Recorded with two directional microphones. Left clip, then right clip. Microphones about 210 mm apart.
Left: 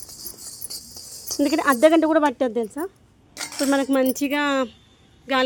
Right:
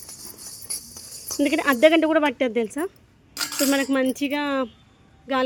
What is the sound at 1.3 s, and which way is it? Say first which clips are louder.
Speech: left 1 dB; centre (ahead or behind).